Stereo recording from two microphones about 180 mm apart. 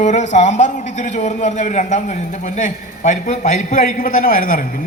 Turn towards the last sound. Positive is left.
turn(degrees=50)  # may be behind; listen again after turning